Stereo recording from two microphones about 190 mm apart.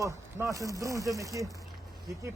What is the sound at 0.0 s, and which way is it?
Speech, 15° right (ahead or behind).